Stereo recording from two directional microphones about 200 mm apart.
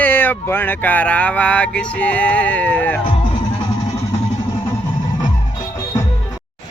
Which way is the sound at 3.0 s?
25° left (ahead or behind).